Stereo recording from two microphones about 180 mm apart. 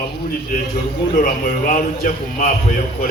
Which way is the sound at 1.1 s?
50° left (ahead or behind).